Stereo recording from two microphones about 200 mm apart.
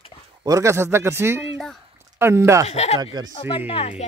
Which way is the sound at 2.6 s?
35° left (ahead or behind).